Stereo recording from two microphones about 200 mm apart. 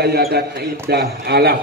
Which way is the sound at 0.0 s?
50° right (ahead or behind).